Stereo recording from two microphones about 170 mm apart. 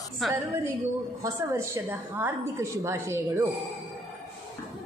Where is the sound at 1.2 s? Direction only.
15° right (ahead or behind).